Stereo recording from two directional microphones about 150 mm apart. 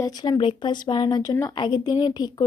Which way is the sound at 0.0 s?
30° left (ahead or behind).